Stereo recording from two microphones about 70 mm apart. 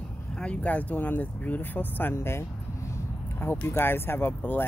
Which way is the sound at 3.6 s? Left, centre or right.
Left.